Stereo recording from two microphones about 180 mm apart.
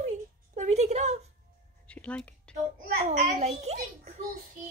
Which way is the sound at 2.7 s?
45° right (ahead or behind).